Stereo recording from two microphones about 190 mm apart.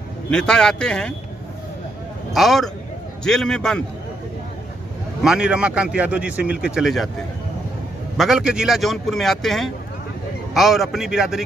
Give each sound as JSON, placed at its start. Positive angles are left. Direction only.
{"t": 0.3, "sound": "a man's voice", "side_deg": 5}
{"t": 2.3, "sound": "a man's voice", "side_deg": 0}
{"t": 5.2, "sound": "a man's voice", "side_deg": -5}
{"t": 8.2, "sound": "a man's voice", "side_deg": -5}